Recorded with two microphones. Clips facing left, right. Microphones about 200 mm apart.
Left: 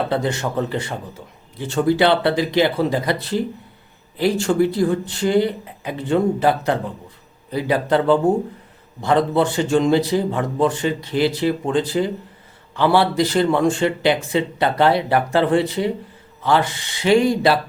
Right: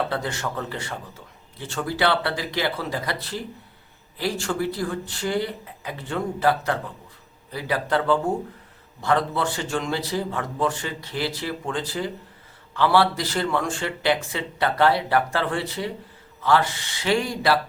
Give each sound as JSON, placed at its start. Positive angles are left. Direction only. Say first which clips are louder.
{"t": 0.1, "sound": "a man's voice", "louder": "left 7 dB", "side_deg": 20}